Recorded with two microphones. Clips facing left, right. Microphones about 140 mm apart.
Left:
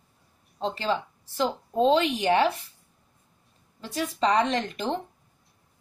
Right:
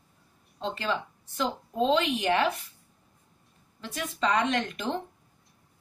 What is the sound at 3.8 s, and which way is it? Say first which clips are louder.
Speech: left 4 dB; 30° left (ahead or behind).